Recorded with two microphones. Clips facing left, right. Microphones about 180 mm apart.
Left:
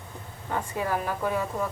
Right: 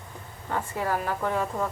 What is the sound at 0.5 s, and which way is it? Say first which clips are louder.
Speech: even; 15° left (ahead or behind).